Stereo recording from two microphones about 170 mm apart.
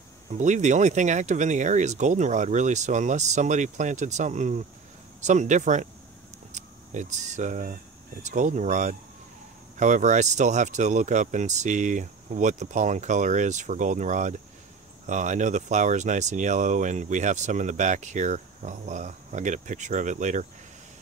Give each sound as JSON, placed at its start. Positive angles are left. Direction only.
{"t": 0.4, "sound": "speech", "side_deg": -45}